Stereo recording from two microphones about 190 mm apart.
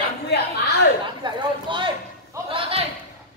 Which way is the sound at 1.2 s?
25° right (ahead or behind).